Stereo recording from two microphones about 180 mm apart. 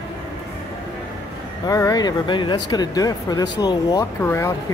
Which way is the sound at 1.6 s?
20° left (ahead or behind).